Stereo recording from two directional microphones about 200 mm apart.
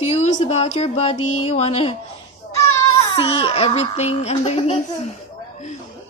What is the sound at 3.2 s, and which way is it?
A woman's voice, 25° left (ahead or behind).